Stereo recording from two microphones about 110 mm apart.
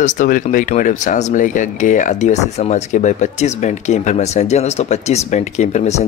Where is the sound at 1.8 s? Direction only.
90° left.